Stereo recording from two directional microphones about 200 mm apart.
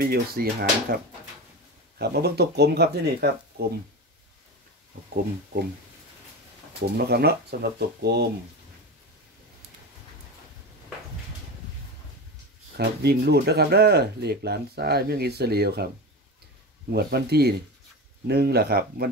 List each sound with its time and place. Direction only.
0.0 s speech: 50° right (ahead or behind)
2.0 s speech: 55° right (ahead or behind)
6.8 s speech: 55° right (ahead or behind)
12.7 s speech: 50° right (ahead or behind)
16.9 s speech: 55° right (ahead or behind)